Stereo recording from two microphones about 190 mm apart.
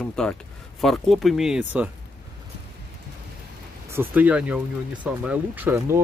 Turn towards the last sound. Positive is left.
turn(degrees=-15)  # may be behind; listen again after turning